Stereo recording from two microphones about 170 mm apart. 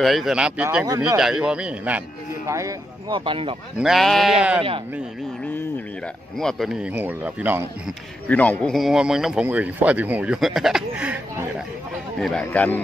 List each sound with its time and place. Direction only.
0.0 s speech: centre (ahead or behind)
2.4 s speech: 20° right (ahead or behind)
3.1 s speech: 30° right (ahead or behind)
3.7 s speech: centre (ahead or behind)
6.3 s speech: centre (ahead or behind)
8.3 s speech: 10° left (ahead or behind); by 11.4 s 5° right (ahead or behind)
12.2 s speech: 5° left (ahead or behind)